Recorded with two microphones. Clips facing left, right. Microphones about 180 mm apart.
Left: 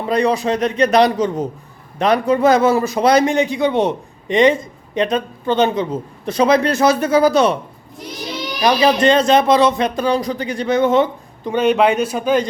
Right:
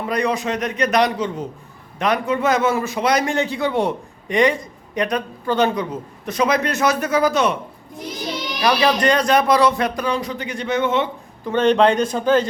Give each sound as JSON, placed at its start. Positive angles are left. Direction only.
{"t": 0.0, "sound": "a man's voice", "side_deg": 30}
{"t": 3.2, "sound": "a man's voice", "side_deg": 15}
{"t": 8.6, "sound": "a man's voice", "side_deg": 20}
{"t": 11.4, "sound": "speech", "side_deg": 10}